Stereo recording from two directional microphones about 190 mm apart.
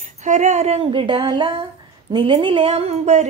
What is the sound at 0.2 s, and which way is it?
A woman's voice, 40° right (ahead or behind).